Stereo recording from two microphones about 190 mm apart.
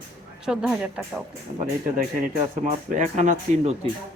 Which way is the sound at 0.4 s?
5° right (ahead or behind).